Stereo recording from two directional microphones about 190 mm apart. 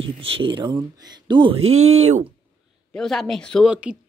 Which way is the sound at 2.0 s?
35° right (ahead or behind).